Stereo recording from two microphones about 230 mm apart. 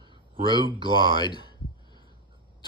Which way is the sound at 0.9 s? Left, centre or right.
Centre.